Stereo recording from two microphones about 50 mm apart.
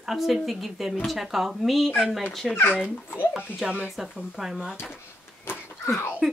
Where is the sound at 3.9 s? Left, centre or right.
Centre.